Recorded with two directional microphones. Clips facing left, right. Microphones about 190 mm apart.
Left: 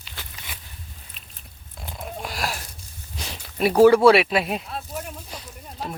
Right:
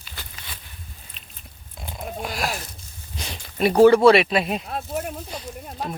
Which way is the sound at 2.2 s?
Centre (ahead or behind).